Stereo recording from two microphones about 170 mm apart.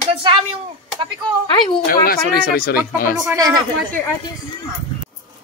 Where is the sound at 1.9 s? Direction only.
60° left (ahead or behind).